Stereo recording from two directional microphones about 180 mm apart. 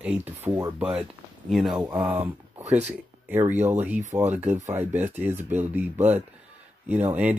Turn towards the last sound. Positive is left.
turn(degrees=-10)  # may be behind; listen again after turning